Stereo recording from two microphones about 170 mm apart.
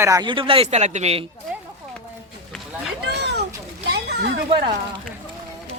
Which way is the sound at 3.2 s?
80° right.